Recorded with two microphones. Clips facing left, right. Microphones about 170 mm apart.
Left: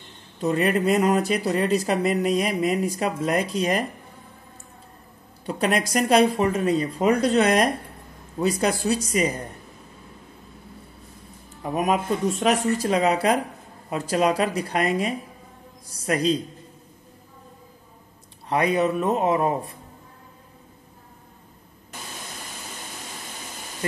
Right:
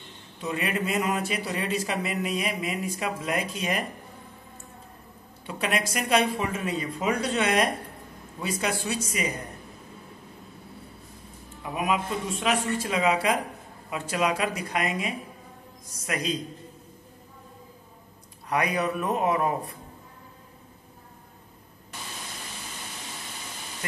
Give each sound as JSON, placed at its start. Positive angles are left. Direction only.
{"t": 0.4, "sound": "speech", "side_deg": 40}
{"t": 5.4, "sound": "speech", "side_deg": 40}
{"t": 11.6, "sound": "speech", "side_deg": 40}
{"t": 18.5, "sound": "a man's voice", "side_deg": 25}